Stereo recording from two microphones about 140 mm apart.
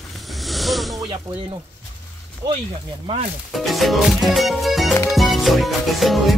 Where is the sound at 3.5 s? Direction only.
Centre (ahead or behind).